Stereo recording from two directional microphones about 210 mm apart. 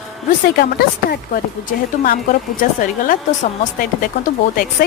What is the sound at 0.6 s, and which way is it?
Speech, 45° left (ahead or behind).